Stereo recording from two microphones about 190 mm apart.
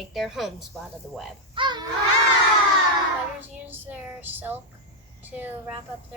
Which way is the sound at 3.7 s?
10° right (ahead or behind).